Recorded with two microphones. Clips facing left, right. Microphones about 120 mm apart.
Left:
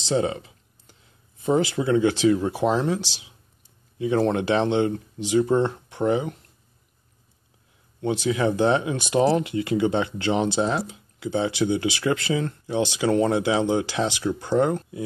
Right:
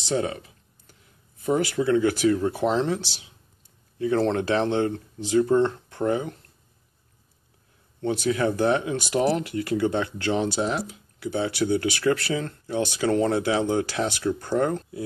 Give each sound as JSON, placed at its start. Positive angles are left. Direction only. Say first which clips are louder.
{"t": 0.1, "sound": "a sound", "louder": "left 3 dB", "side_deg": 25}
{"t": 1.4, "sound": "speech", "louder": "left 1 dB", "side_deg": 25}
{"t": 8.0, "sound": "speech", "louder": "left 1 dB", "side_deg": 20}